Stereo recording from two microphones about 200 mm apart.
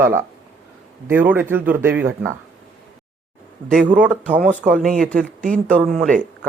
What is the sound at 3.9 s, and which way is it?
Speech, 5° right (ahead or behind).